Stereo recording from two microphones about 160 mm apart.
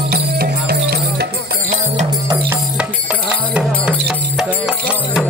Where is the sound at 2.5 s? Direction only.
5° right (ahead or behind).